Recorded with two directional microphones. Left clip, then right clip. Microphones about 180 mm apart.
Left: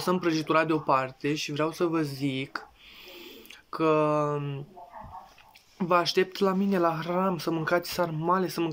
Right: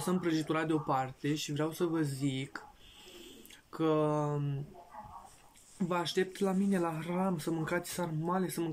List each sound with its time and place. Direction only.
0.0 s speech: 25° right (ahead or behind)
3.7 s speech: 25° right (ahead or behind)
5.8 s speech: 20° right (ahead or behind)